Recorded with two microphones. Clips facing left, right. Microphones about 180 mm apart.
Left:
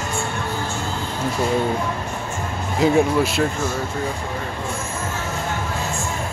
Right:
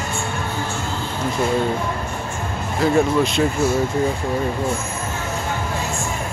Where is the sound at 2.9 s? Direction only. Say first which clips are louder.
Even; 5° left (ahead or behind).